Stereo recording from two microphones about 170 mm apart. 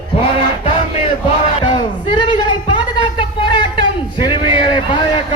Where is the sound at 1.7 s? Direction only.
25° left (ahead or behind).